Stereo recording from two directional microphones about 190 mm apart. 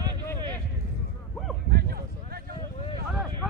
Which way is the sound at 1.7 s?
55° right (ahead or behind).